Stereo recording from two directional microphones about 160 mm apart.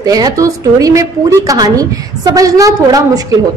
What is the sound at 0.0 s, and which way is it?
A woman's voice, 25° right (ahead or behind).